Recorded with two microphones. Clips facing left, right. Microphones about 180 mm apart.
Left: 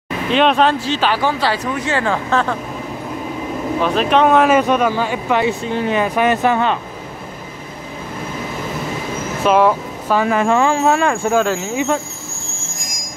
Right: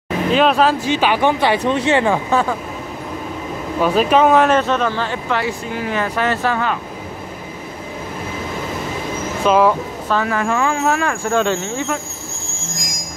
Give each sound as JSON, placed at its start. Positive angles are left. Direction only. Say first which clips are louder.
{"t": 0.3, "sound": "speech", "louder": "left 1 dB", "side_deg": -5}
{"t": 0.8, "sound": "speech", "louder": "right 2 dB", "side_deg": -15}
{"t": 3.8, "sound": "speech", "louder": "right 1 dB", "side_deg": -5}
{"t": 9.4, "sound": "speech", "louder": "even", "side_deg": 0}
{"t": 10.1, "sound": "speech", "louder": "left 4 dB", "side_deg": 20}
{"t": 11.2, "sound": "speech", "louder": "left 1 dB", "side_deg": 5}